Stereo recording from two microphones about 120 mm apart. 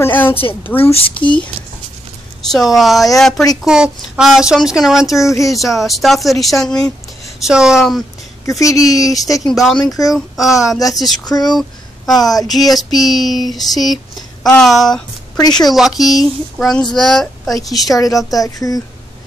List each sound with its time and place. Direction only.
0.0 s a woman's voice: 15° left (ahead or behind)
0.9 s speech: 45° left (ahead or behind)
2.5 s speech: centre (ahead or behind)
8.5 s speech: 30° left (ahead or behind)
9.5 s speech: centre (ahead or behind)
11.2 s speech: 35° left (ahead or behind)
12.4 s speech: centre (ahead or behind)
17.9 s speech: 30° left (ahead or behind)